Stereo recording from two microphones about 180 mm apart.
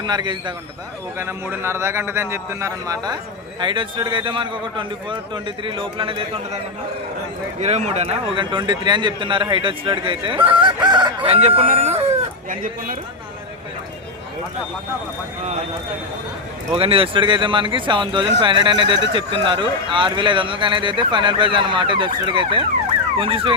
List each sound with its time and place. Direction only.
0.0 s a man's voice: 25° right (ahead or behind)
1.2 s a man's voice: 15° right (ahead or behind); by 6.4 s 30° right (ahead or behind)
7.6 s a man's voice: 40° right (ahead or behind)
12.5 s speech: 50° right (ahead or behind)
16.7 s a man's voice: 30° right (ahead or behind)